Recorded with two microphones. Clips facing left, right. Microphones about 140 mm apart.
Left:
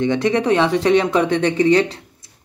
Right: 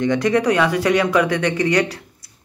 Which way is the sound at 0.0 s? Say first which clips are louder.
Even; 25° left (ahead or behind).